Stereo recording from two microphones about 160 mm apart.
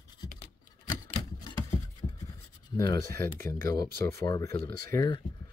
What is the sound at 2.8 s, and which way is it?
Speech, 20° left (ahead or behind).